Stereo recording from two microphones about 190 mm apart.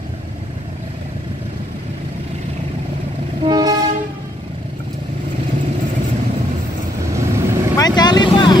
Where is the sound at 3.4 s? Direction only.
20° right (ahead or behind).